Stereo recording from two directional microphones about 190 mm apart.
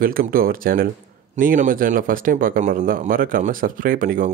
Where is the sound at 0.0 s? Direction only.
50° right (ahead or behind).